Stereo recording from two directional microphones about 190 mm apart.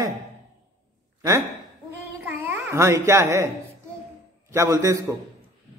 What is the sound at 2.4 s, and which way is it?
Speech, 10° right (ahead or behind).